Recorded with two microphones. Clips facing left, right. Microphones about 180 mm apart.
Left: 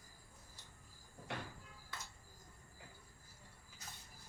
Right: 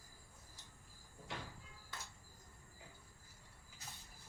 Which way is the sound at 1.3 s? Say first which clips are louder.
Left 3 dB; 60° left (ahead or behind).